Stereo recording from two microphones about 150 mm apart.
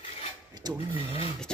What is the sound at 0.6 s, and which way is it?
Speech, 25° right (ahead or behind).